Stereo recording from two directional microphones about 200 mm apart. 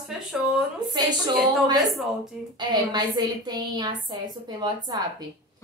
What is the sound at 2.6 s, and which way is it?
A woman's voice, 20° right (ahead or behind).